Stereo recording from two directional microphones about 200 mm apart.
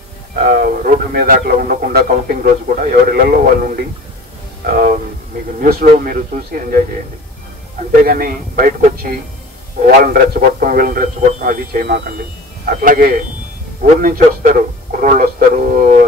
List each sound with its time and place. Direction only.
0.5 s a man's voice: 45° right (ahead or behind)
8.0 s a man's voice: 45° right (ahead or behind)